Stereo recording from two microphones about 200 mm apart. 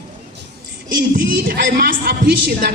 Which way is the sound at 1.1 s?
45° right (ahead or behind).